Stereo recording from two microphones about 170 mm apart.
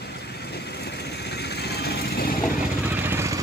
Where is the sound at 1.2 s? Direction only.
75° left (ahead or behind).